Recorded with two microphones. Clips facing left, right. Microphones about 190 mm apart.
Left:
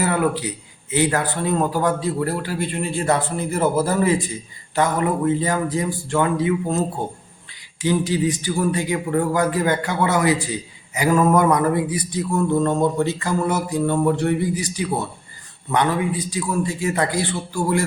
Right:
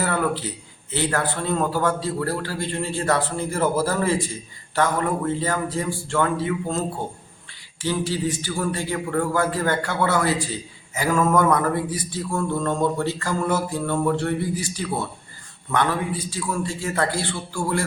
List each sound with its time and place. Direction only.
0.0 s speech: 15° left (ahead or behind)
16.3 s speech: 15° left (ahead or behind)